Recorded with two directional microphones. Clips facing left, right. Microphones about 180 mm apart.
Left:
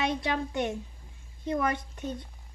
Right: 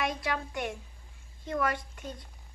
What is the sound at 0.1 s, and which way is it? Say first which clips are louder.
Speech: left 4 dB; 25° left (ahead or behind).